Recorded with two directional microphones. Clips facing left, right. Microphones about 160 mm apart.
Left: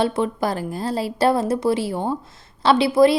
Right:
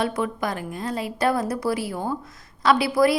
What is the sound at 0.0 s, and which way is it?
A woman's voice, 30° left (ahead or behind).